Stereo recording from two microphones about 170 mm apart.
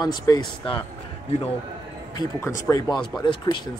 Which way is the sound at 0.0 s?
25° left (ahead or behind).